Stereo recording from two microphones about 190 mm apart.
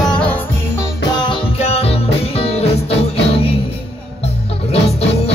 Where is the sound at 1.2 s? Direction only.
30° left (ahead or behind).